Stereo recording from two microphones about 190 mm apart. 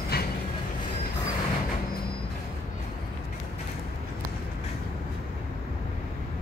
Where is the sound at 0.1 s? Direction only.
55° left (ahead or behind).